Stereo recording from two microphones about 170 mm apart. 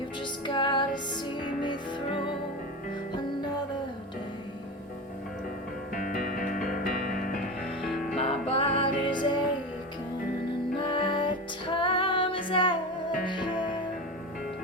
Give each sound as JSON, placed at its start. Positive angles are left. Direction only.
{"t": 0.4, "sound": "music", "side_deg": 30}
{"t": 5.9, "sound": "music", "side_deg": 55}
{"t": 7.8, "sound": "music", "side_deg": 0}
{"t": 8.2, "sound": "music", "side_deg": 35}
{"t": 10.8, "sound": "music", "side_deg": 30}